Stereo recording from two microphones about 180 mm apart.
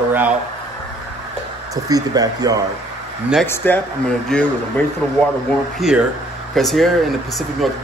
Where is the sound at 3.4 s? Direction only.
10° left (ahead or behind).